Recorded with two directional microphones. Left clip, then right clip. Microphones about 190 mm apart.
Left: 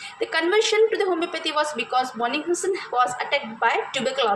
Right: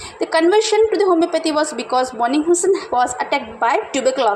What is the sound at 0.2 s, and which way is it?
A woman's voice, 30° right (ahead or behind).